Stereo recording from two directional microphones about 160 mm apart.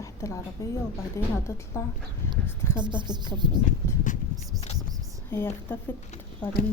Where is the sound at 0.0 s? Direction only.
20° left (ahead or behind).